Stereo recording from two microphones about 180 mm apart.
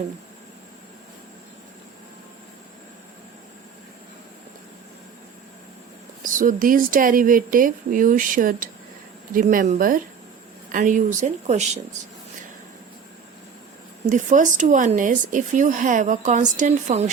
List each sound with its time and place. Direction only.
6.2 s a woman's voice: 50° right (ahead or behind)
14.1 s a woman's voice: 45° right (ahead or behind)